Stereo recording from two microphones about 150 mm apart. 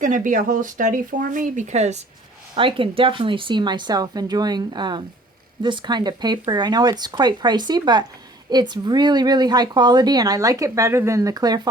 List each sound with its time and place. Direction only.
0.0 s speech: 60° right (ahead or behind)
2.6 s speech: 35° right (ahead or behind)